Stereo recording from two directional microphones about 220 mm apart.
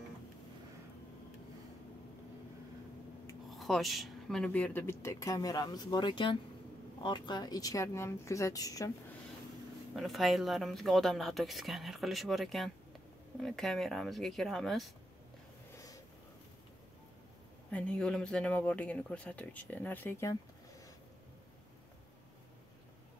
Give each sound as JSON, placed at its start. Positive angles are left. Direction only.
{"t": 3.4, "sound": "speech", "side_deg": 0}
{"t": 9.9, "sound": "speech", "side_deg": 0}
{"t": 17.6, "sound": "speech", "side_deg": 5}